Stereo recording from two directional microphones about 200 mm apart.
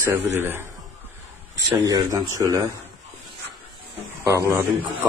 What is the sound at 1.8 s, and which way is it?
Speech, 15° right (ahead or behind).